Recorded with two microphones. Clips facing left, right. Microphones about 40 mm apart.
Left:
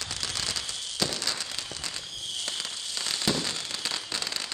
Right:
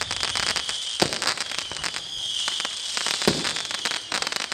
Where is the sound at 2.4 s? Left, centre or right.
Right.